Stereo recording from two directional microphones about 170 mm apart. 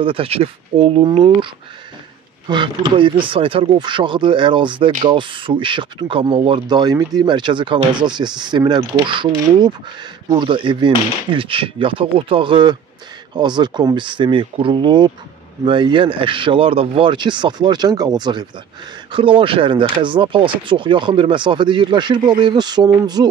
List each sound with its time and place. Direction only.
0.0 s speech: 35° right (ahead or behind)